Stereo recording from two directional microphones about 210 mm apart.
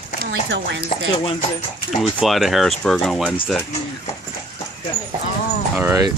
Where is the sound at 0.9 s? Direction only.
25° left (ahead or behind).